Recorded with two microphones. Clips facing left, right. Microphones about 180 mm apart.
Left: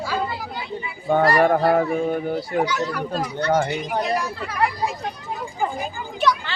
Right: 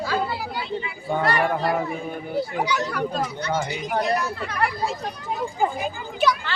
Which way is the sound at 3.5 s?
55° left (ahead or behind).